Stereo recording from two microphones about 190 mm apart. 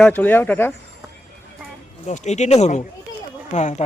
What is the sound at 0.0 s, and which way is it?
Speech, 10° left (ahead or behind).